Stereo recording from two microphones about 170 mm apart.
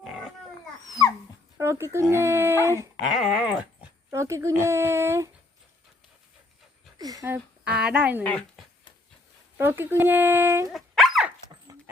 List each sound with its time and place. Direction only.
0.9 s dog: 20° left (ahead or behind)
1.5 s speech: 15° right (ahead or behind)
3.0 s dog: 5° right (ahead or behind)
4.1 s speech: 15° right (ahead or behind)
7.0 s speech: 20° right (ahead or behind)
7.3 s speech: 10° right (ahead or behind)
8.2 s dog: 5° left (ahead or behind)
9.6 s speech: 10° right (ahead or behind)
10.7 s dog: centre (ahead or behind)